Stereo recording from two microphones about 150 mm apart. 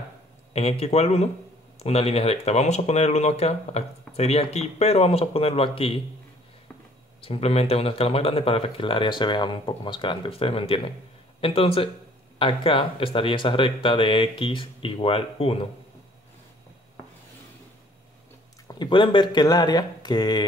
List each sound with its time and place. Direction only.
0.5 s speech: 45° left (ahead or behind)
7.2 s speech: 40° left (ahead or behind)
18.7 s speech: 30° left (ahead or behind)